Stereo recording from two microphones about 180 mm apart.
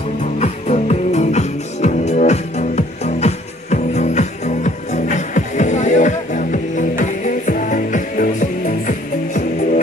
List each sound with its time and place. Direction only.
0.2 s music: 40° left (ahead or behind)